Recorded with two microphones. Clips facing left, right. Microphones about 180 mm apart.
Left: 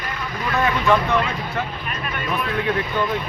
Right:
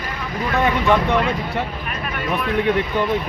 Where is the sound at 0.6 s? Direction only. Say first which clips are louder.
Right 1 dB; 20° right (ahead or behind).